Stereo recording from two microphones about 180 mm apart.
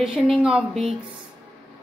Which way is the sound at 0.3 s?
5° right (ahead or behind).